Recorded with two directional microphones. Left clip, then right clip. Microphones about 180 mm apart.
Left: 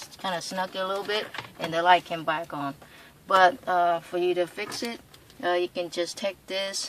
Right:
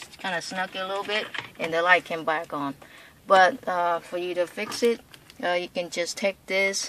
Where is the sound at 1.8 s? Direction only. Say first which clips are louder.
Even; 45° right (ahead or behind).